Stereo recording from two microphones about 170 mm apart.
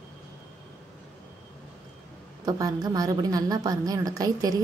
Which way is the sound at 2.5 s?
20° right (ahead or behind).